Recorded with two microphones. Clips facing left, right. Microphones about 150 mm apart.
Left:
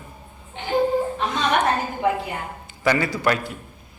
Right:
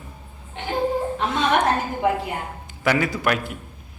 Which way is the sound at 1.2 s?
Centre (ahead or behind).